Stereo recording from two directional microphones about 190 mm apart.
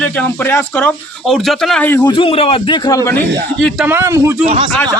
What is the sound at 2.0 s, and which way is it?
Speech, 30° left (ahead or behind).